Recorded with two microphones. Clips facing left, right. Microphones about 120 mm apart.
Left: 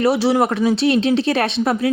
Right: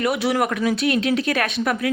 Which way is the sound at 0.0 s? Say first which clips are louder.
Left 5 dB; 30° left (ahead or behind).